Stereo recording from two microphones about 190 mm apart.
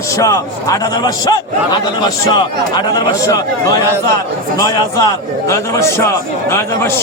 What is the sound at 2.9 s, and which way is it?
A man's voice, 20° left (ahead or behind).